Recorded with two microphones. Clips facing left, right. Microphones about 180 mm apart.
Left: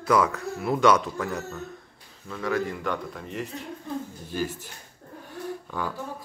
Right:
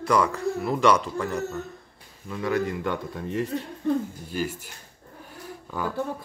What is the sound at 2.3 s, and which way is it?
Speech, 15° right (ahead or behind).